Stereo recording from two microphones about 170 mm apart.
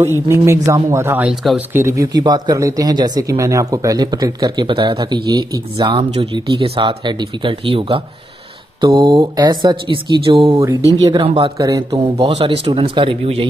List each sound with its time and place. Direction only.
0.0 s speech: 15° right (ahead or behind)
10.5 s speech: 20° right (ahead or behind)
11.5 s speech: 20° right (ahead or behind)
12.2 s speech: 35° right (ahead or behind)